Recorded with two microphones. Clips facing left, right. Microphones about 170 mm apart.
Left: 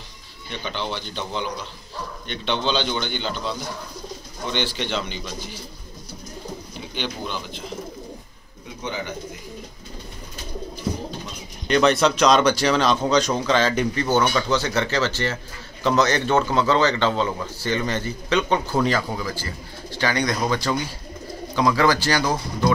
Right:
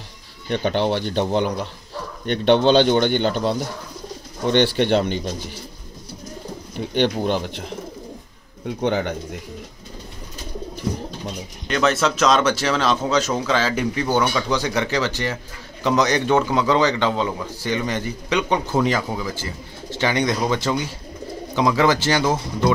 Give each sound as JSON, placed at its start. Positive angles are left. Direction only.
{"t": 0.5, "sound": "speech", "side_deg": -60}
{"t": 6.9, "sound": "speech", "side_deg": -60}
{"t": 8.6, "sound": "speech", "side_deg": -60}
{"t": 11.6, "sound": "a man's voice", "side_deg": 0}